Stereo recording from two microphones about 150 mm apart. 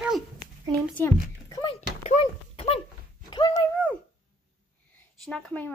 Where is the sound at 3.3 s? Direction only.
30° left (ahead or behind).